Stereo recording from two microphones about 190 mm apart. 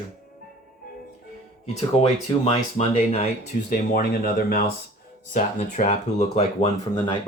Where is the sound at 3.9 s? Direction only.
55° left (ahead or behind).